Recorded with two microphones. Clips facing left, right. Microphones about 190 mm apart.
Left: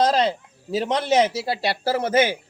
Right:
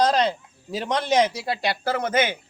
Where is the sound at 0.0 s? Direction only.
25° left (ahead or behind).